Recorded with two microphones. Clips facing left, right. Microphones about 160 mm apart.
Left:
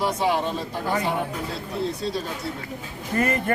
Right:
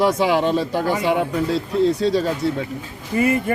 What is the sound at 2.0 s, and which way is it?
Speech, 90° right.